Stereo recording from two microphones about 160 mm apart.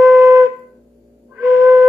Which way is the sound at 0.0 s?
15° right (ahead or behind).